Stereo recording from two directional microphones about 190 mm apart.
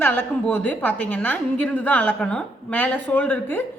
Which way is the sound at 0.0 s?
10° left (ahead or behind).